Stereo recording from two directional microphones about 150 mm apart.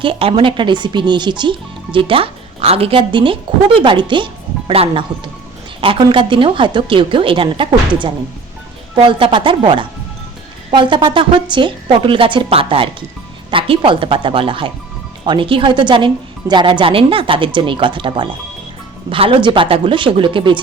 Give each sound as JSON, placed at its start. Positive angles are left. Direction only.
{"t": 0.0, "sound": "speech", "side_deg": -35}